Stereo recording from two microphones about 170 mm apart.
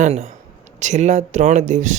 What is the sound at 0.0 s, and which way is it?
Speech, 45° right (ahead or behind).